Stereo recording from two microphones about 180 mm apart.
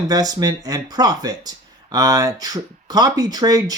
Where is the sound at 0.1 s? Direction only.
20° right (ahead or behind).